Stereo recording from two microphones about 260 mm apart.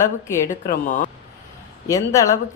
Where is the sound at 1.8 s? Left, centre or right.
Centre.